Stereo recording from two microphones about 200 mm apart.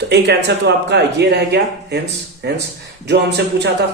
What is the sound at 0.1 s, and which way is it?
A man's voice, 60° right (ahead or behind).